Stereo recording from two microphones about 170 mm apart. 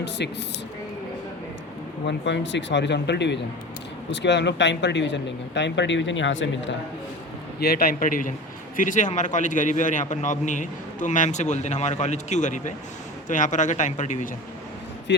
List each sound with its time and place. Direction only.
0.2 s speech: 85° left
2.0 s speech: 90° left
7.6 s a man's voice: 65° left (ahead or behind); by 14.3 s 45° left (ahead or behind)